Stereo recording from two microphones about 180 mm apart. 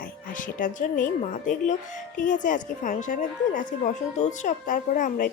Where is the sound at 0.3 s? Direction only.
45° left (ahead or behind).